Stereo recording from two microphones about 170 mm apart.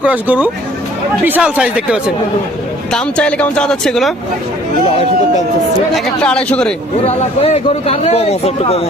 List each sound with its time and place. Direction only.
0.0 s speech: 10° right (ahead or behind)
2.9 s speech: 5° left (ahead or behind)
5.9 s a man's voice: 5° left (ahead or behind)
7.0 s speech: 40° left (ahead or behind)